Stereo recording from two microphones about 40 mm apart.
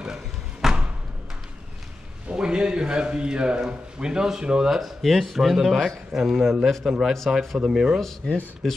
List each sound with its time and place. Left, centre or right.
0.0 s a sound: centre
2.3 s speech: right
8.2 s speech: centre